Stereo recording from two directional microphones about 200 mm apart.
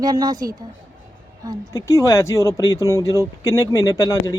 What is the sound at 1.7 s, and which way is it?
Speech, 15° left (ahead or behind).